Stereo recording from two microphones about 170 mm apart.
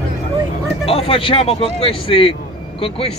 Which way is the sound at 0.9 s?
35° left (ahead or behind).